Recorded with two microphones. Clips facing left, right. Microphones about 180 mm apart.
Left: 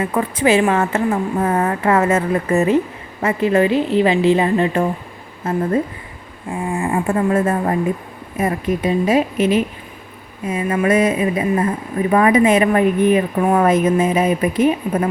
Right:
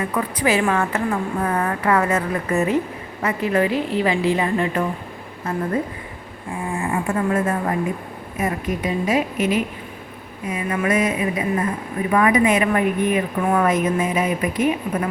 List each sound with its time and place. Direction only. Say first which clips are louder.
0.0 s a woman's voice: left 4 dB; 25° left (ahead or behind)
6.7 s a woman's voice: left 4 dB; 30° left (ahead or behind)